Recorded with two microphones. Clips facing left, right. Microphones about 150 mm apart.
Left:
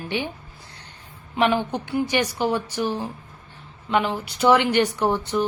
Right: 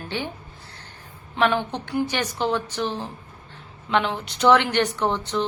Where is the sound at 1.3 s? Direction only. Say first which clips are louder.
Left 1 dB; 10° left (ahead or behind).